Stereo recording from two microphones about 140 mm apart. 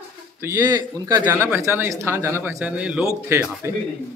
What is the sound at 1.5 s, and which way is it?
Speech, 15° right (ahead or behind).